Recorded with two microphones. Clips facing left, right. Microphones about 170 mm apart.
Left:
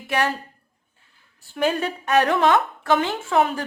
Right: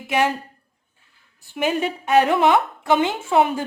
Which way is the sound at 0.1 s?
15° right (ahead or behind).